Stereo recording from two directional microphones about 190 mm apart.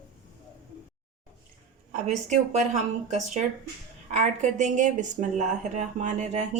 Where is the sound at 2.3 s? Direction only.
40° right (ahead or behind).